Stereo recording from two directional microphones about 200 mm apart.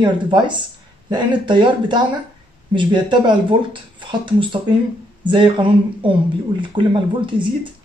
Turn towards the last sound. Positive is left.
turn(degrees=-25)  # may be behind; listen again after turning